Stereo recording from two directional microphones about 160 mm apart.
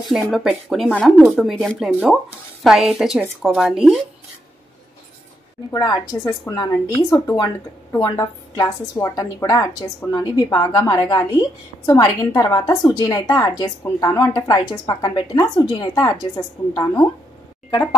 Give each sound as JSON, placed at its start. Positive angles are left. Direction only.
{"t": 0.1, "sound": "speech", "side_deg": 0}
{"t": 5.7, "sound": "speech", "side_deg": 20}